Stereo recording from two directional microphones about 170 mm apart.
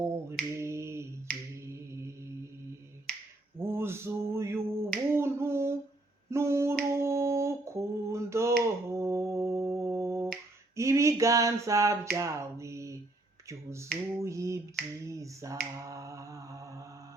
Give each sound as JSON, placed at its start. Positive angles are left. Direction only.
{"t": 0.0, "sound": "finger snapping", "side_deg": -15}
{"t": 1.3, "sound": "finger snapping", "side_deg": 5}
{"t": 1.6, "sound": "finger snapping", "side_deg": -15}
{"t": 3.1, "sound": "finger snapping", "side_deg": 5}
{"t": 3.6, "sound": "finger snapping", "side_deg": -15}
{"t": 6.3, "sound": "a sound", "side_deg": -15}
{"t": 13.5, "sound": "finger snapping", "side_deg": -15}
{"t": 15.8, "sound": "mantra", "side_deg": -20}